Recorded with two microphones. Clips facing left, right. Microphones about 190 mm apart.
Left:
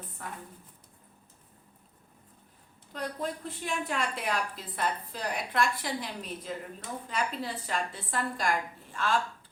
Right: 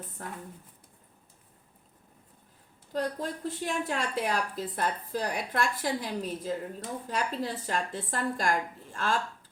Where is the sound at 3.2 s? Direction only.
40° right (ahead or behind).